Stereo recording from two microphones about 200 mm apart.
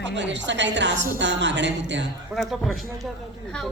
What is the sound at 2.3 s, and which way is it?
Speech, centre (ahead or behind).